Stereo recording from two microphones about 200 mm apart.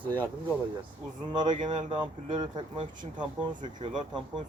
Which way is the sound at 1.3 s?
20° right (ahead or behind).